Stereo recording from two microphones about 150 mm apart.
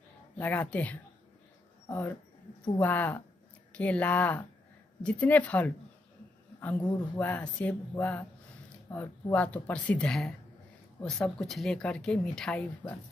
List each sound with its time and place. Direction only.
0.4 s speech: 10° left (ahead or behind)